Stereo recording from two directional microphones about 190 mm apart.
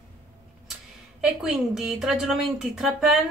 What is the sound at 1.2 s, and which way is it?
Speech, 5° right (ahead or behind).